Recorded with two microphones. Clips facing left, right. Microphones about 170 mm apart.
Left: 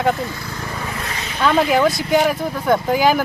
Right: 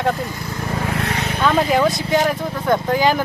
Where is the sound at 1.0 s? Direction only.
60° right (ahead or behind).